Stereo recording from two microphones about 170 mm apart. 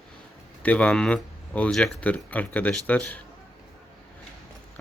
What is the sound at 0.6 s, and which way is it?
Speech, 5° left (ahead or behind).